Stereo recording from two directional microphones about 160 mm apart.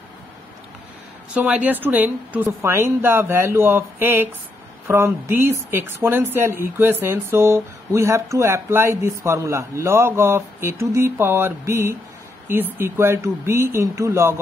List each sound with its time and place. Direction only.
1.3 s speech: 10° right (ahead or behind)